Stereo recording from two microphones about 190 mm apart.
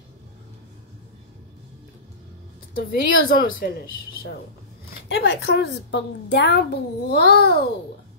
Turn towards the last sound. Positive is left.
turn(degrees=55)  # may be behind; listen again after turning